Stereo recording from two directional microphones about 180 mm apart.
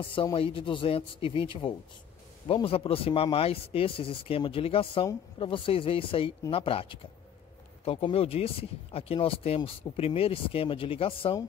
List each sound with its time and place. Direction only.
0.0 s speech: 30° left (ahead or behind)